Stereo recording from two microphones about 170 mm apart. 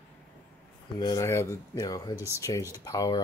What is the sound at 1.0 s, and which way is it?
Speech, 20° left (ahead or behind).